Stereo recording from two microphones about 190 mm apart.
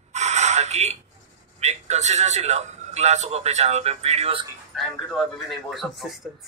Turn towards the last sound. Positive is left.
turn(degrees=0)  # may be behind; listen again after turning